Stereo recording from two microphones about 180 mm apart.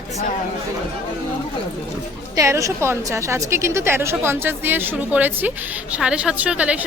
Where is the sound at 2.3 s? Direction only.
15° right (ahead or behind).